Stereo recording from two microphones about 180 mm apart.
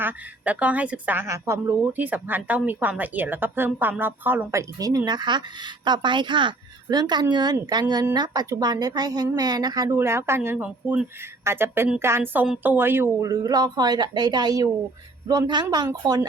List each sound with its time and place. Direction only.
0.0 s a woman's voice: 10° right (ahead or behind)